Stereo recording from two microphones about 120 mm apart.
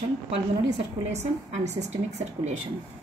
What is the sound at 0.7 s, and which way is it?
A woman's voice, 65° right (ahead or behind).